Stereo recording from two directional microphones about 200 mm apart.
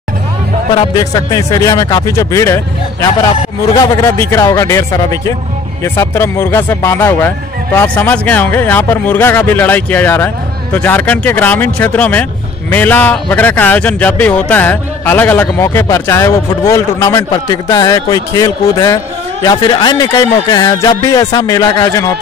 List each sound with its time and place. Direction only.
0.7 s speech: 20° left (ahead or behind)